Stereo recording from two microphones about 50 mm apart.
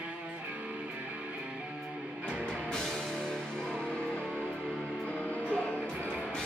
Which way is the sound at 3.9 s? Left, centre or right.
Left.